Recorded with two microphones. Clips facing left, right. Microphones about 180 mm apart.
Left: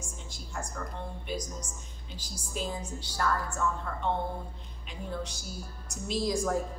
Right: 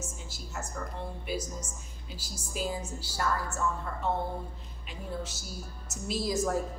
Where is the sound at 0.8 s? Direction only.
5° right (ahead or behind).